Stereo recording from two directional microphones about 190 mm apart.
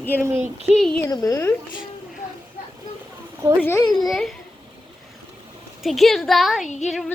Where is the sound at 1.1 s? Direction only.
15° left (ahead or behind).